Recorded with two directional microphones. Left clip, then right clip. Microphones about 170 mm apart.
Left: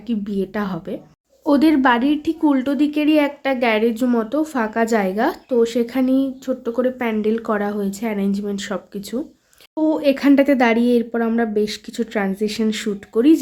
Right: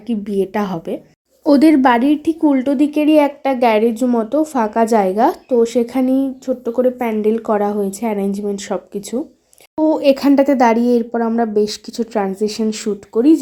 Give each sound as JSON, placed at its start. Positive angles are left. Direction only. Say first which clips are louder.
{"t": 0.1, "sound": "a woman's voice", "louder": "right 5 dB", "side_deg": -15}
{"t": 2.4, "sound": "speech", "louder": "right 2 dB", "side_deg": -5}
{"t": 11.1, "sound": "speech", "louder": "right 3 dB", "side_deg": 5}
{"t": 11.3, "sound": "speech", "louder": "right 4 dB", "side_deg": -10}